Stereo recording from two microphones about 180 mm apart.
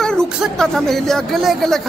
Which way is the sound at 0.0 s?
5° left (ahead or behind).